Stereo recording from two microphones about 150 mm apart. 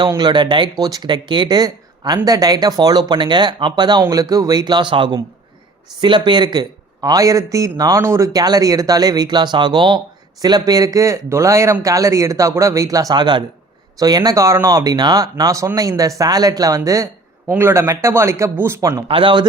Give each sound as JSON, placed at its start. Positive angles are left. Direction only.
{"t": 0.0, "sound": "a man's voice", "side_deg": -30}
{"t": 19.0, "sound": "speech", "side_deg": -35}